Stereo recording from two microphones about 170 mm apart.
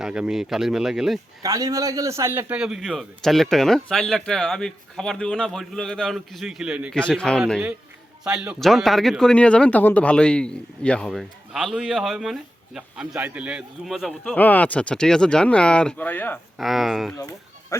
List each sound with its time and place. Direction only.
0.0 s speech: 5° right (ahead or behind)
1.4 s speech: 20° right (ahead or behind)
6.9 s speech: 5° left (ahead or behind)
16.6 s speech: centre (ahead or behind)
17.2 s a sound: 20° left (ahead or behind)